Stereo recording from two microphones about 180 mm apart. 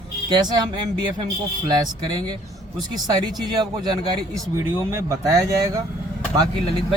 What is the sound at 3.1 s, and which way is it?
Speech, 20° right (ahead or behind).